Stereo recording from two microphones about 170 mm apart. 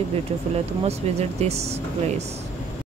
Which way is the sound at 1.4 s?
40° right (ahead or behind).